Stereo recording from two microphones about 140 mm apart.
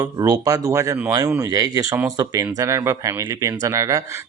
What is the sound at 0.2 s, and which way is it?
Speech, 25° right (ahead or behind).